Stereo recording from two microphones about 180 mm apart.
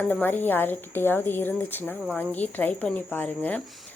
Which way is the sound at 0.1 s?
10° left (ahead or behind).